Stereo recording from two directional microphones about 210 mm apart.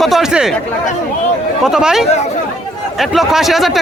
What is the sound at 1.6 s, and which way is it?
Speech, centre (ahead or behind).